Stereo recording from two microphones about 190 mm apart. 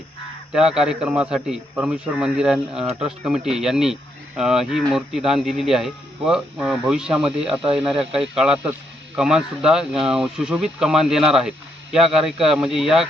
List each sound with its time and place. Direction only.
0.5 s speech: 5° right (ahead or behind)
7.3 s speech: 30° right (ahead or behind)
8.1 s speech: 5° right (ahead or behind)